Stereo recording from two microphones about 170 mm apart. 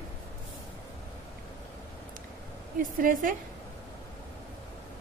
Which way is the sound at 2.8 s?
55° right (ahead or behind).